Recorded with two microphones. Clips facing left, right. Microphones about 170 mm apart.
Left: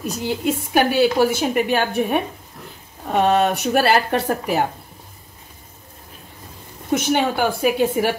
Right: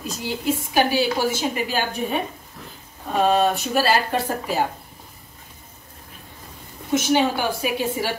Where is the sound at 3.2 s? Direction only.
70° left (ahead or behind).